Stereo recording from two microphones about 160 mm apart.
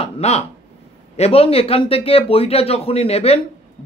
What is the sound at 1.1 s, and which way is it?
Speech, 40° left (ahead or behind).